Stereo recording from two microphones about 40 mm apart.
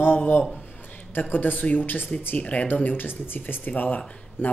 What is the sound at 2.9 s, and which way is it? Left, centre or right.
Speech, left.